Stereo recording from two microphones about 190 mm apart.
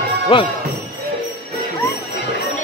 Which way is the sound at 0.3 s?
30° left (ahead or behind).